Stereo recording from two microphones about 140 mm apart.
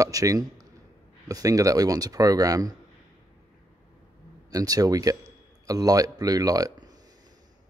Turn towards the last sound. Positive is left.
turn(degrees=-25)  # may be behind; listen again after turning